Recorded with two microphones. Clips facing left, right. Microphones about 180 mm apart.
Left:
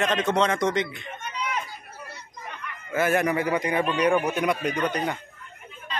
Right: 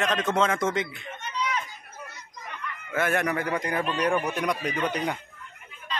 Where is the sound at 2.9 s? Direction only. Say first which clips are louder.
Left 3 dB; 5° left (ahead or behind).